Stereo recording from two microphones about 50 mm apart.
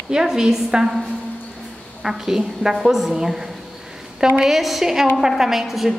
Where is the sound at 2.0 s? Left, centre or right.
Centre.